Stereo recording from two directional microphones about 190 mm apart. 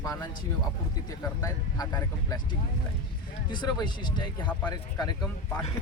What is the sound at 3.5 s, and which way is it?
Speech, 20° left (ahead or behind).